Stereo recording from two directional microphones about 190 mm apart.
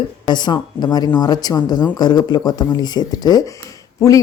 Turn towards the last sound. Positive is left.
turn(degrees=15)  # may be behind; listen again after turning